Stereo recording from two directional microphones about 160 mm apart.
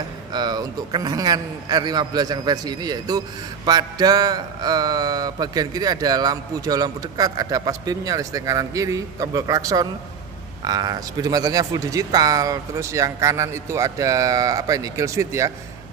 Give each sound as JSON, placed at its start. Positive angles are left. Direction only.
{"t": 0.3, "sound": "mantra", "side_deg": -25}